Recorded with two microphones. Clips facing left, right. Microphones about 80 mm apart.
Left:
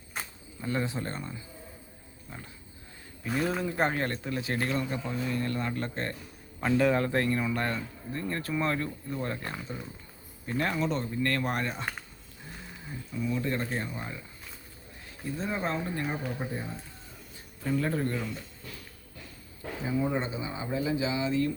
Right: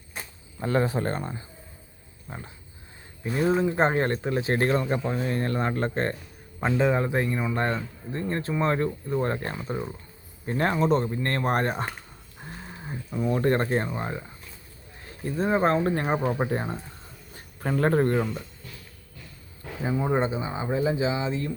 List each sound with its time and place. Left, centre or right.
0.6 s speech: right
2.3 s speech: right
6.6 s speech: right
7.5 s speech: right
17.3 s speech: right
19.8 s speech: right